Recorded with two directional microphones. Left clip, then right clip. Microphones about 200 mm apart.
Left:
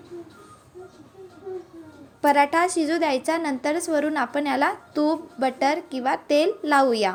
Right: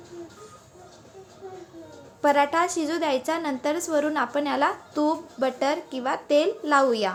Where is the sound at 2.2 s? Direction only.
15° left (ahead or behind).